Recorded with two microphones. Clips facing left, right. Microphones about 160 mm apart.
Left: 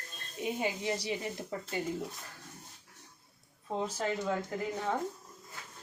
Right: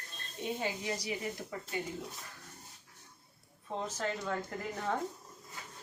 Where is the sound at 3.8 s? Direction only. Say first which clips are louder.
Left 4 dB; 10° left (ahead or behind).